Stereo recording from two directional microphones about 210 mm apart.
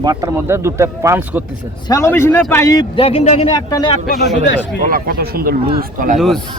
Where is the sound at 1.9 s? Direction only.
10° left (ahead or behind).